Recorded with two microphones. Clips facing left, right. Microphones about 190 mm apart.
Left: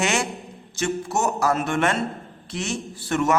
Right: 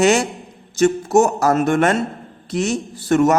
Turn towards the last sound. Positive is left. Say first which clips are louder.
# right 7 dB
turn(degrees=-40)  # may be behind; listen again after turning